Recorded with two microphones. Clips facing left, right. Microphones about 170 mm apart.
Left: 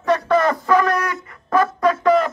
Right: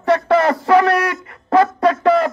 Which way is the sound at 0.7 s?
75° right (ahead or behind).